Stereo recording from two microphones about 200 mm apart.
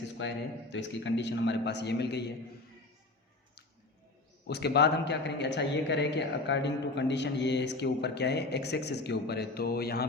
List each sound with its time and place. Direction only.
0.2 s a man's voice: 60° left (ahead or behind)
4.4 s a man's voice: 55° left (ahead or behind)